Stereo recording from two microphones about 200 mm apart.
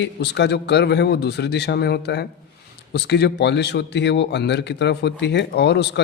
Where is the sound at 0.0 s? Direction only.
55° left (ahead or behind).